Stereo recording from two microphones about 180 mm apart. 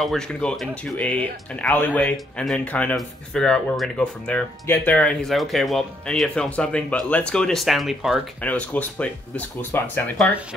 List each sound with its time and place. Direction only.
0.0 s speech: 5° left (ahead or behind)